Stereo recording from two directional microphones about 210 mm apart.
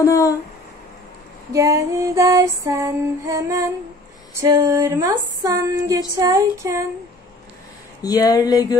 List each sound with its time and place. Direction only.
0.0 s speech: 15° left (ahead or behind)
1.5 s a sound: 15° right (ahead or behind)
8.0 s speech: 20° left (ahead or behind)